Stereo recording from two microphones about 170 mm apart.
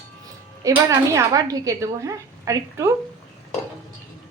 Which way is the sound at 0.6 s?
20° right (ahead or behind).